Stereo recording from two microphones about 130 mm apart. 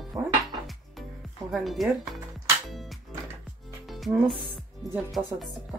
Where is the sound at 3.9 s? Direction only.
Centre (ahead or behind).